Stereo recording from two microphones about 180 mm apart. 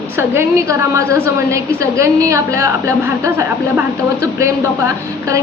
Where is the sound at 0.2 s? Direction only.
15° right (ahead or behind).